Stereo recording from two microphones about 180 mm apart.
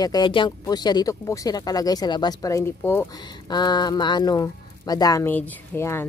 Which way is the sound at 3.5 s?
25° left (ahead or behind).